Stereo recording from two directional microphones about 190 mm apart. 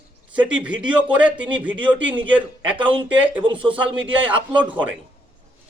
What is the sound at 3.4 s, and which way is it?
Speech, 25° right (ahead or behind).